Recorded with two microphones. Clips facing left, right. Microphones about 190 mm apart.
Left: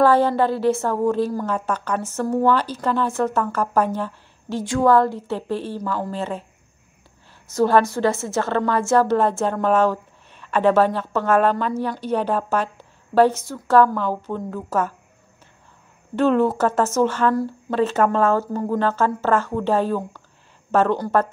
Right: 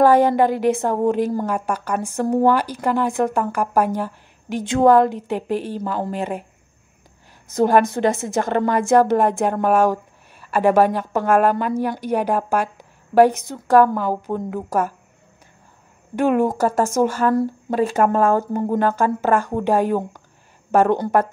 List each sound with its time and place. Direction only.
0.0 s a woman's voice: 15° right (ahead or behind)
7.4 s a woman's voice: 15° right (ahead or behind)
16.2 s a woman's voice: 15° right (ahead or behind)